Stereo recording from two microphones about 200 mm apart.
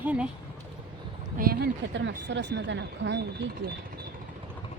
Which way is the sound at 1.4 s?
50° right (ahead or behind).